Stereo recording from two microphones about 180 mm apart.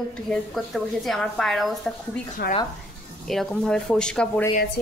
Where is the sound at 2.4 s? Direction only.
60° left (ahead or behind).